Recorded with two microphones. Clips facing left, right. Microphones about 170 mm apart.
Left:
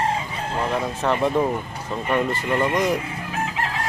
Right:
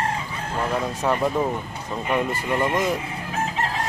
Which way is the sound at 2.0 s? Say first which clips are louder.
Left 1 dB; 5° right (ahead or behind).